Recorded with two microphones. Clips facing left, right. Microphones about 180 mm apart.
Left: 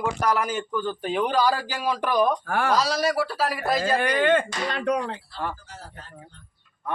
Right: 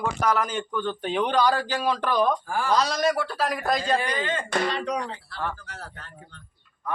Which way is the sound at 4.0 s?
60° left (ahead or behind).